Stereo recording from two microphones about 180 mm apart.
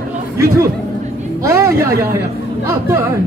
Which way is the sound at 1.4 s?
15° right (ahead or behind).